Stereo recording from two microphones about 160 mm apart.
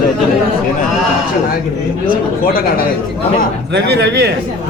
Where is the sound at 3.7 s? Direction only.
90° right.